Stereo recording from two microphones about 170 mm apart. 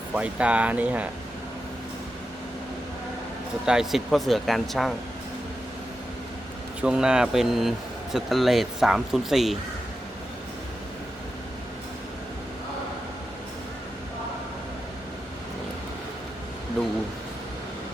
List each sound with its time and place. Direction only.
0.1 s speech: 5° right (ahead or behind)
3.7 s speech: 5° right (ahead or behind)
6.8 s speech: 5° right (ahead or behind)
16.8 s speech: centre (ahead or behind)